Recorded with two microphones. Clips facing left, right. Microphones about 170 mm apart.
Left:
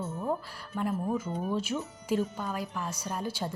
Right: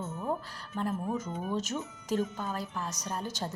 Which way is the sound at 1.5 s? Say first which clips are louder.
Even; 10° left (ahead or behind).